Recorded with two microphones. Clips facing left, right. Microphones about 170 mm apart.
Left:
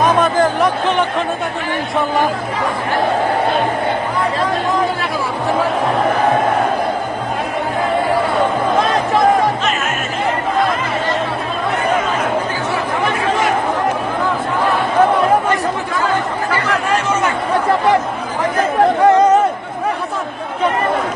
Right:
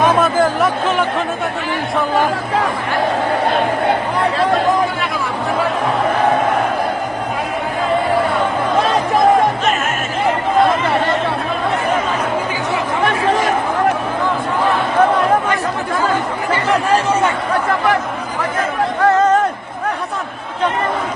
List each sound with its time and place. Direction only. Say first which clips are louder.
0.2 s speech: even; 5° right (ahead or behind)
16.5 s chatter: right 4 dB; 30° right (ahead or behind)
19.0 s a sound: left 1 dB; 15° left (ahead or behind)